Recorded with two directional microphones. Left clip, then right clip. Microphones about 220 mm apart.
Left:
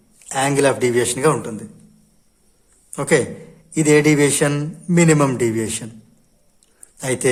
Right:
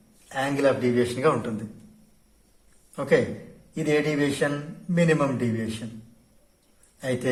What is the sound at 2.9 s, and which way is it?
A man's voice, 40° left (ahead or behind).